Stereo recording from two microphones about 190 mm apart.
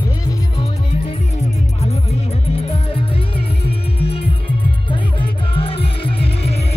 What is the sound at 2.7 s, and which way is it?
Music, 30° left (ahead or behind).